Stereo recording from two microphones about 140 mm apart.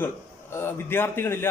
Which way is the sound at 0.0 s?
15° left (ahead or behind).